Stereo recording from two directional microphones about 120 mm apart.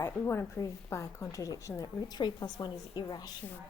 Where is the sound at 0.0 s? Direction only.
20° left (ahead or behind).